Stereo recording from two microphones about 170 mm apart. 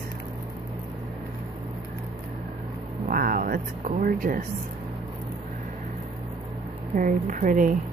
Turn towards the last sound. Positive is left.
turn(degrees=-50)  # may be behind; listen again after turning